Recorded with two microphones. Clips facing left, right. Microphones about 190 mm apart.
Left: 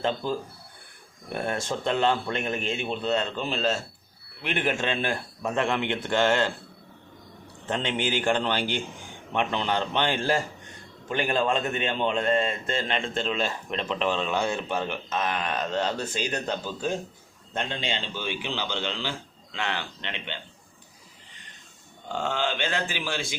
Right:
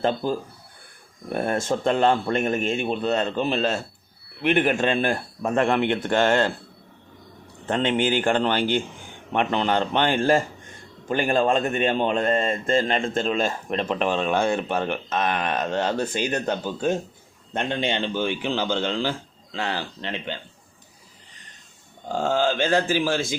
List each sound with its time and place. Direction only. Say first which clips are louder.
1.3 s a man's voice: right 5 dB; 50° right (ahead or behind)
7.7 s a man's voice: right 6 dB; 50° right (ahead or behind)
19.5 s speech: right 3 dB; 35° right (ahead or behind)
22.1 s speech: right 6 dB; 40° right (ahead or behind)